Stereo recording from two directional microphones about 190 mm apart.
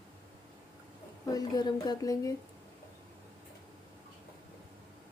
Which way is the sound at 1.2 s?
20° left (ahead or behind).